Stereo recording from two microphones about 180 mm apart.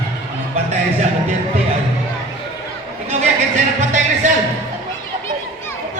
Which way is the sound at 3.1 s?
40° right (ahead or behind).